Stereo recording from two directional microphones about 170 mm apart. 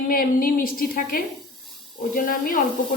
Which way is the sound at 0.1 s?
55° left (ahead or behind).